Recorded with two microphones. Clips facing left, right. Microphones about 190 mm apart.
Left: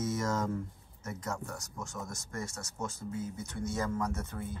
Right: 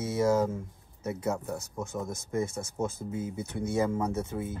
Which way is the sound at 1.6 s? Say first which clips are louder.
Right 7 dB; 55° right (ahead or behind).